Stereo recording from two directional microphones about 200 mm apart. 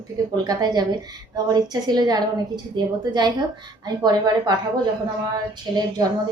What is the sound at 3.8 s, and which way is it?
Speech, 20° right (ahead or behind).